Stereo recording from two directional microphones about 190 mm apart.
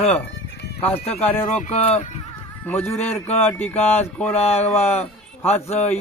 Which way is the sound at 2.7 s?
10° left (ahead or behind).